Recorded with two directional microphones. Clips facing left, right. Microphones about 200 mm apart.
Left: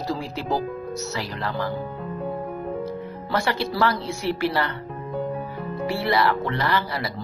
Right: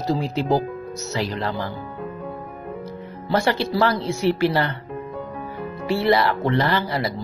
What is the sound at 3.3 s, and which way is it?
Speech, 25° right (ahead or behind).